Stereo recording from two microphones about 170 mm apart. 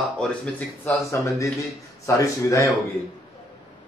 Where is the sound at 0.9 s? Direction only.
20° left (ahead or behind).